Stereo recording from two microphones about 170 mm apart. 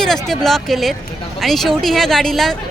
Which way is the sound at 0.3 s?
Centre (ahead or behind).